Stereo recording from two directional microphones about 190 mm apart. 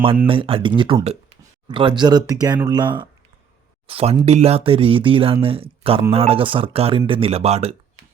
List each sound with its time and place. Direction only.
0.3 s speech: 30° right (ahead or behind)